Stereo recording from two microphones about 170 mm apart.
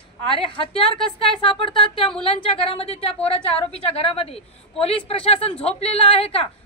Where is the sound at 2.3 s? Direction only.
35° left (ahead or behind).